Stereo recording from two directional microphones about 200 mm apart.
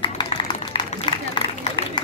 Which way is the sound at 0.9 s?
25° left (ahead or behind).